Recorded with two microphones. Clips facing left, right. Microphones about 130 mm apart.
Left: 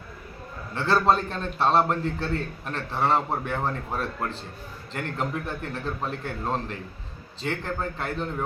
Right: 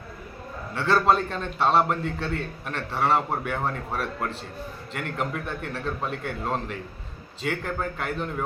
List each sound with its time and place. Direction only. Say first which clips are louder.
0.8 s a man's voice: right 1 dB; centre (ahead or behind)
7.4 s a man's voice: right 1 dB; 30° left (ahead or behind)
8.0 s a man's voice: even; centre (ahead or behind)